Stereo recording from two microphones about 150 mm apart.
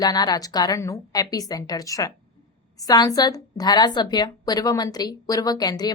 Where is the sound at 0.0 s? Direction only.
25° left (ahead or behind).